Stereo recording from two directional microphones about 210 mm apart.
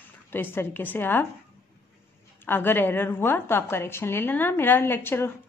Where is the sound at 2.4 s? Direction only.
10° left (ahead or behind).